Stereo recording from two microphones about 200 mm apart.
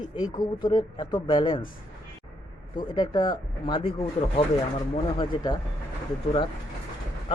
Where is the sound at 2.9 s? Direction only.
20° left (ahead or behind).